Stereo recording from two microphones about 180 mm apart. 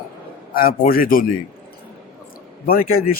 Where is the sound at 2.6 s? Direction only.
55° left (ahead or behind).